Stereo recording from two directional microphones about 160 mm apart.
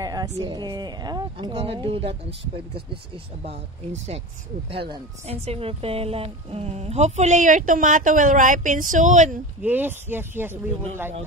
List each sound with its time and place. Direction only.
0.0 s speech: 25° right (ahead or behind); by 9.4 s 50° right (ahead or behind)
9.6 s speech: 10° right (ahead or behind)